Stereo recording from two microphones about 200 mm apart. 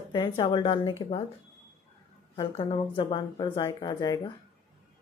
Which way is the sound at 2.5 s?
30° left (ahead or behind).